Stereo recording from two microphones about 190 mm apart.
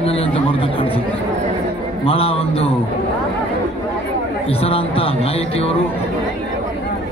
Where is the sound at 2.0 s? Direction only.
30° left (ahead or behind).